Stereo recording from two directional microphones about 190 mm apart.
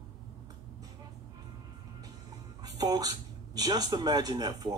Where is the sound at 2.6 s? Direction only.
20° right (ahead or behind).